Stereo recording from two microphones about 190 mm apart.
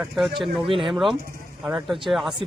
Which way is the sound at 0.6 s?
25° right (ahead or behind).